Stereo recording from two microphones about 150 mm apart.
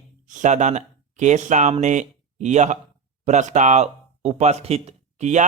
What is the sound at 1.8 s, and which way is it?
Speech, 55° right (ahead or behind).